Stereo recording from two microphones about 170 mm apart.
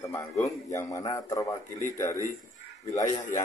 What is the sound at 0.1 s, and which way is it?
A man's voice, 20° left (ahead or behind).